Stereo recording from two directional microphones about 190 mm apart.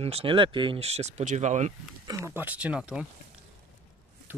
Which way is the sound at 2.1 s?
15° right (ahead or behind).